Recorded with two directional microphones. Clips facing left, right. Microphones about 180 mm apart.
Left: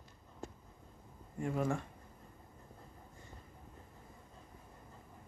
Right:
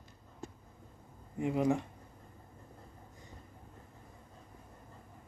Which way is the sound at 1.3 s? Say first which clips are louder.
Right 5 dB; 15° right (ahead or behind).